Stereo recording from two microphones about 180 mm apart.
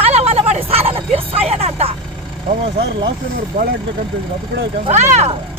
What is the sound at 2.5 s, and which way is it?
Speech, 30° right (ahead or behind).